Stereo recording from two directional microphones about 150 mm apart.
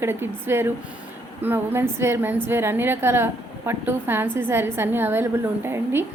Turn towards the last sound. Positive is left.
turn(degrees=-15)  # may be behind; listen again after turning